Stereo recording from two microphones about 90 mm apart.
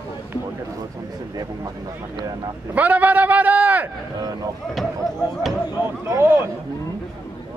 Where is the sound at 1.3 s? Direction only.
45° right (ahead or behind).